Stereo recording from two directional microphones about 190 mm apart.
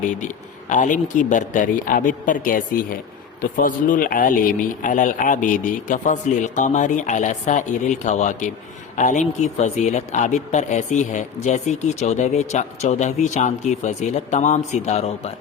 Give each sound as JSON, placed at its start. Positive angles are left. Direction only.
{"t": 0.0, "sound": "a man's voice", "side_deg": 40}